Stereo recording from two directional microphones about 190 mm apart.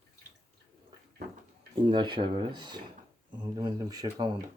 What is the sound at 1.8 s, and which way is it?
Speech, 25° right (ahead or behind).